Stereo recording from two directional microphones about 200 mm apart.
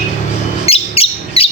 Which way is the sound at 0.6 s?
30° left (ahead or behind).